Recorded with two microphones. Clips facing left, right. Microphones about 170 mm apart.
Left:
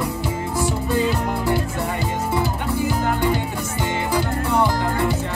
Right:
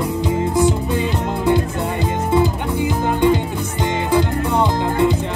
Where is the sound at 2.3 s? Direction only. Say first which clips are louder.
Right 7 dB; 20° right (ahead or behind).